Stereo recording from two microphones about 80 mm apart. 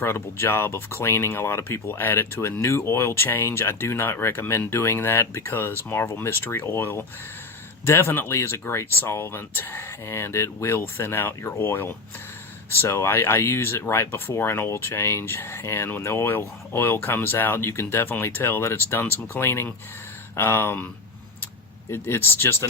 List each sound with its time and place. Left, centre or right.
0.0 s speech: left